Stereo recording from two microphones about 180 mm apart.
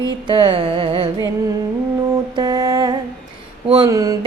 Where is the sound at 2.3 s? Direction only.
20° right (ahead or behind).